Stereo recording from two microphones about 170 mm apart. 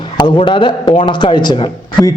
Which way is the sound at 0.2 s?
30° left (ahead or behind).